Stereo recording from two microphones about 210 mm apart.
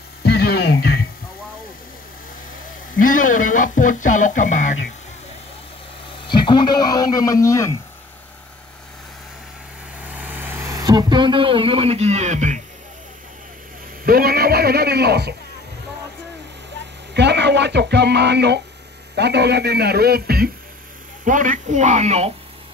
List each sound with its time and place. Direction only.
0.2 s a sound: 50° left (ahead or behind)
3.0 s speech: 40° left (ahead or behind)
6.2 s a man's voice: 20° left (ahead or behind)
10.0 s speech: 10° right (ahead or behind); by 12.5 s 35° right (ahead or behind)
14.0 s speech: 45° right (ahead or behind)
17.1 s speech: 55° right (ahead or behind); by 22.3 s 30° right (ahead or behind)